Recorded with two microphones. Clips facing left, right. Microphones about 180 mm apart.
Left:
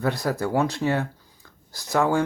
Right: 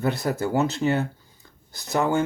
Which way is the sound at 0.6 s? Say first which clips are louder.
Even; 25° right (ahead or behind).